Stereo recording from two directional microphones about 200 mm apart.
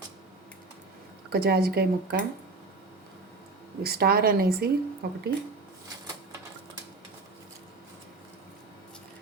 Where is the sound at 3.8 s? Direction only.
50° right (ahead or behind).